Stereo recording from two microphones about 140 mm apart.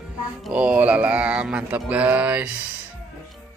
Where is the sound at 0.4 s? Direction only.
10° right (ahead or behind).